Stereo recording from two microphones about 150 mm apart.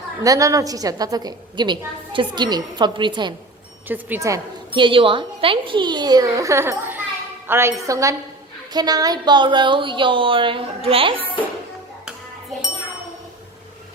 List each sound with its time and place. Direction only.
0.2 s a woman's voice: 20° right (ahead or behind)
3.8 s a woman's voice: 10° right (ahead or behind)
4.7 s a woman's voice: 35° right (ahead or behind)